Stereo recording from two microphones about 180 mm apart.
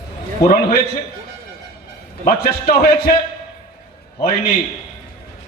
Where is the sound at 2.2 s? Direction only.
55° left (ahead or behind).